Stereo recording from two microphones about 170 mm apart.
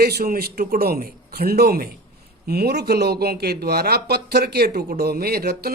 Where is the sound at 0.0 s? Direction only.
65° right (ahead or behind).